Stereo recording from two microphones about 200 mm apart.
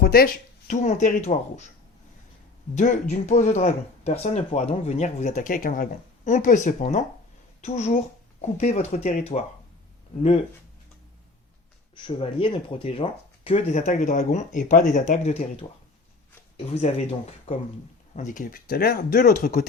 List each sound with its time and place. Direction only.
0.0 s a sound: 50° left (ahead or behind)
0.7 s speech: 35° left (ahead or behind)
2.7 s speech: 35° left (ahead or behind)
12.0 s speech: 25° left (ahead or behind)
16.7 s speech: 30° left (ahead or behind)